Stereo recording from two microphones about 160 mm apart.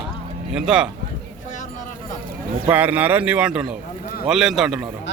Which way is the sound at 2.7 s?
10° right (ahead or behind).